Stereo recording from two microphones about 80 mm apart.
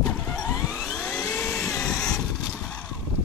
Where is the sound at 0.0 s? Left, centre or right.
Centre.